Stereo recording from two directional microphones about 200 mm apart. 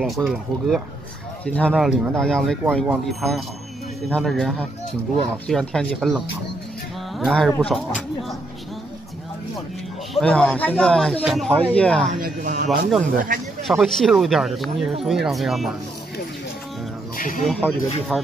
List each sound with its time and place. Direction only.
0.0 s speech: centre (ahead or behind)
10.1 s speech: 5° left (ahead or behind)
12.1 s speech: 45° right (ahead or behind)
13.7 s speech: centre (ahead or behind)
17.4 s speech: 5° left (ahead or behind)